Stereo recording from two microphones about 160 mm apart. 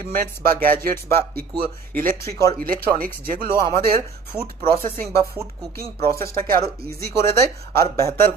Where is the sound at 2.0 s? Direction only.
60° right (ahead or behind).